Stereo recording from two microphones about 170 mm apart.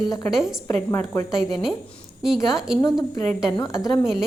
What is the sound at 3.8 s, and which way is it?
Speech, 20° left (ahead or behind).